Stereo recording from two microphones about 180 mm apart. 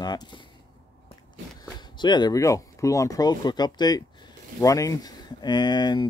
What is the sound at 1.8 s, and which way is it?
Speech, 25° left (ahead or behind).